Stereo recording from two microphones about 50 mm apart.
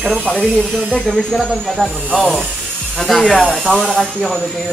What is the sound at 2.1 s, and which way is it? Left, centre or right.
Speech, centre.